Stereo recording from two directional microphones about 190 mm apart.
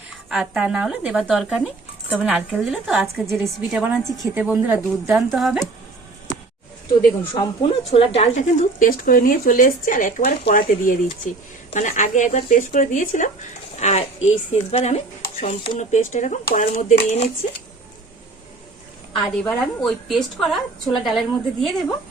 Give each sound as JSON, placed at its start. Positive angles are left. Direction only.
{"t": 0.3, "sound": "speech", "side_deg": 0}
{"t": 7.3, "sound": "a woman's voice", "side_deg": 30}
{"t": 8.8, "sound": "a woman's voice", "side_deg": 45}
{"t": 19.2, "sound": "speech", "side_deg": 5}